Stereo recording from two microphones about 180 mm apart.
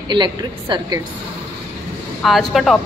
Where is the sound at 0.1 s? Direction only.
25° right (ahead or behind).